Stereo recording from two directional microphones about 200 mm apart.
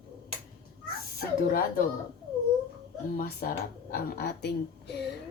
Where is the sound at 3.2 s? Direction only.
50° left (ahead or behind).